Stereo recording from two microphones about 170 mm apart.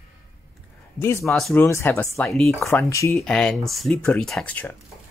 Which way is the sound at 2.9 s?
15° left (ahead or behind).